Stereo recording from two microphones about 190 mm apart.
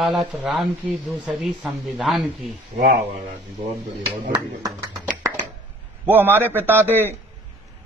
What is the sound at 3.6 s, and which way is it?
Speech, 30° right (ahead or behind).